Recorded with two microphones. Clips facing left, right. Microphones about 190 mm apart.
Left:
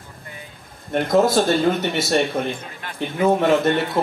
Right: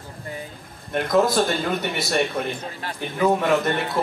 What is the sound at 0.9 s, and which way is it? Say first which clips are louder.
Speech: left 2 dB; 25° left (ahead or behind).